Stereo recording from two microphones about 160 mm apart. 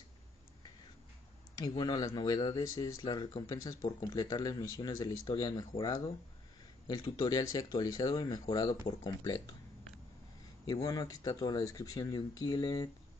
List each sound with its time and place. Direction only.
1.6 s speech: 25° left (ahead or behind)
10.7 s speech: 25° left (ahead or behind)